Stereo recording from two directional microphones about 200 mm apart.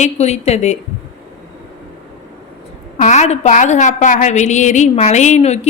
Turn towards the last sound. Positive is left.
turn(degrees=35)  # may be behind; listen again after turning